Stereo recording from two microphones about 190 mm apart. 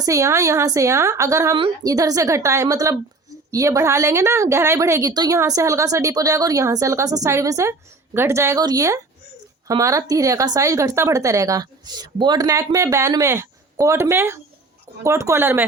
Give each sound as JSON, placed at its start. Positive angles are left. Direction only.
{"t": 0.0, "sound": "a woman's voice", "side_deg": -15}